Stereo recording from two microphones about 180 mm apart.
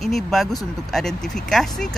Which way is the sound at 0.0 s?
Centre (ahead or behind).